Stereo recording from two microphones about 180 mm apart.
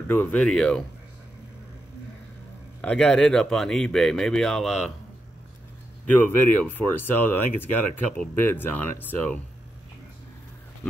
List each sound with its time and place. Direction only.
0.1 s speech: 10° left (ahead or behind)
2.8 s speech: 5° left (ahead or behind)
6.0 s speech: 10° left (ahead or behind)